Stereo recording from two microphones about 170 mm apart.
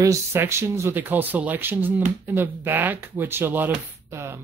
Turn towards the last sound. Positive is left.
turn(degrees=-15)  # may be behind; listen again after turning